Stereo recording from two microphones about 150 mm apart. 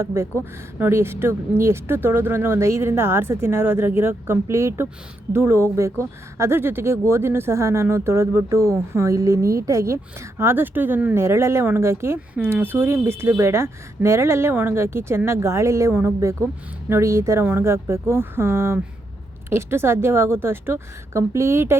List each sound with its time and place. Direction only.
0.0 s speech: 15° right (ahead or behind)